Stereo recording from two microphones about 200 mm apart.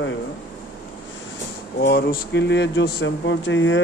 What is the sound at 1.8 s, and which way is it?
Speech, 60° left (ahead or behind).